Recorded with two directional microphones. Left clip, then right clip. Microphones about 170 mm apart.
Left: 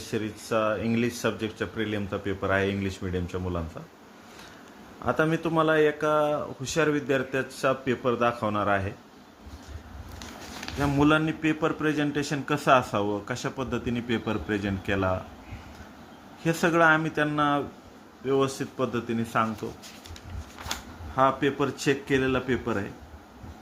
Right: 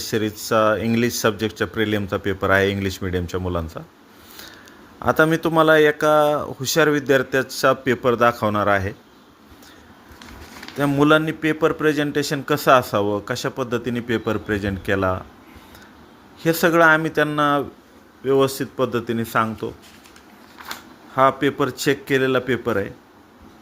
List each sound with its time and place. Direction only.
0.1 s speech: 50° right (ahead or behind)
5.0 s speech: 50° right (ahead or behind)
10.8 s a man's voice: 35° right (ahead or behind)
16.4 s a man's voice: 35° right (ahead or behind)
21.2 s a man's voice: 45° right (ahead or behind)